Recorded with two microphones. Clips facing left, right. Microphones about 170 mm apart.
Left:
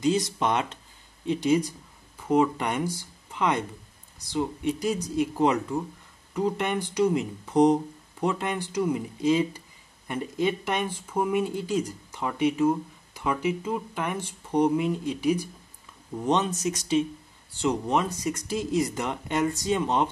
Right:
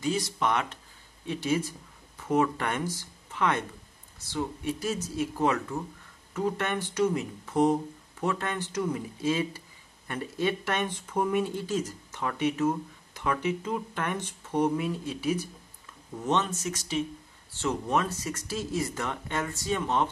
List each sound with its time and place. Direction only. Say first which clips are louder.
0.0 s speech: left 4 dB; 20° left (ahead or behind)